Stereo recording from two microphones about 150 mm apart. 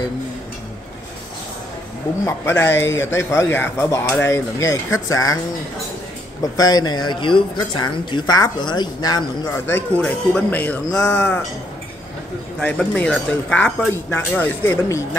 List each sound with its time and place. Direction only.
2.2 s speech: 15° left (ahead or behind)
6.5 s speech: 25° left (ahead or behind)
9.5 s speech: 15° left (ahead or behind)
12.5 s speech: 10° left (ahead or behind)